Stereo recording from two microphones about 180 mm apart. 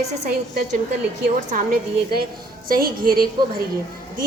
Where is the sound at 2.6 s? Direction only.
55° right (ahead or behind).